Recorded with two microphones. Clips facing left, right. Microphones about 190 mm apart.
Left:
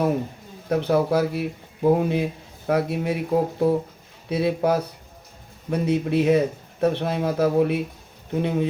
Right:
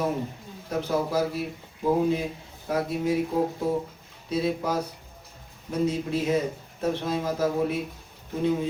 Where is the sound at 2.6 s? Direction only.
65° left (ahead or behind).